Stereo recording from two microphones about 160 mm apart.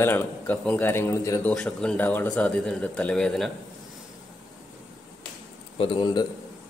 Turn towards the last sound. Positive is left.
turn(degrees=30)  # may be behind; listen again after turning